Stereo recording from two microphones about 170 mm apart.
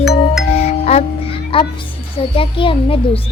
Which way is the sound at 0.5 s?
40° left (ahead or behind).